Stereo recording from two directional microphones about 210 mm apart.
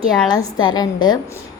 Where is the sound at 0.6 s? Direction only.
20° left (ahead or behind).